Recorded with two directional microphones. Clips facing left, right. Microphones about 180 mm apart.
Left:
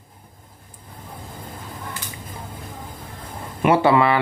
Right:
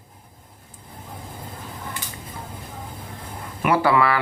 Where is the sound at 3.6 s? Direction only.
25° left (ahead or behind).